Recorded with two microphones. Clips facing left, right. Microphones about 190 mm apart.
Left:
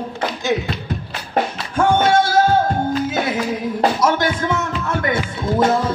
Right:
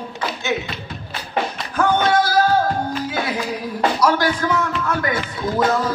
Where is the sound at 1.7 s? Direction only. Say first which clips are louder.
Left 2 dB; 25° left (ahead or behind).